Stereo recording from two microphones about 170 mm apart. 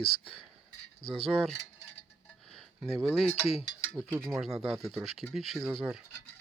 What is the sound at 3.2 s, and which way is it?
Speech, 5° left (ahead or behind).